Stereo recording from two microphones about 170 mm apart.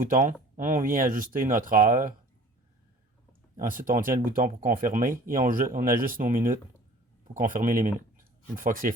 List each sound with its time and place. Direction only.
0.0 s speech: 50° right (ahead or behind)
3.6 s speech: 55° right (ahead or behind)
8.2 s a sound: 55° right (ahead or behind)